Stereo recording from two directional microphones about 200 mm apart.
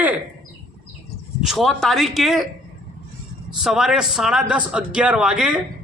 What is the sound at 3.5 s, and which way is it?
Speech, centre (ahead or behind).